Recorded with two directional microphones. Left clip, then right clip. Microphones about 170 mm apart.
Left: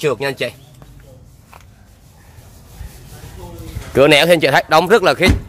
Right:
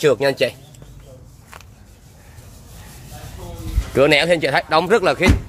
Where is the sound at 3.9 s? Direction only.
25° left (ahead or behind).